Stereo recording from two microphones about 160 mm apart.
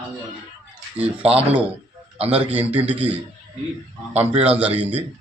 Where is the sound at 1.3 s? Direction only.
40° right (ahead or behind).